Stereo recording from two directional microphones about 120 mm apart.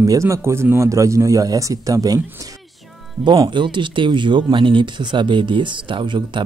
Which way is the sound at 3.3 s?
40° right (ahead or behind).